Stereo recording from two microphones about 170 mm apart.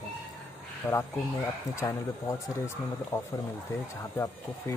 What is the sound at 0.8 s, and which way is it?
Speech, 20° left (ahead or behind).